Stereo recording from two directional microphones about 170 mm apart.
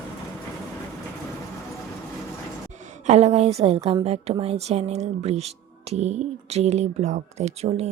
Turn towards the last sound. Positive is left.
turn(degrees=-40)  # may be behind; listen again after turning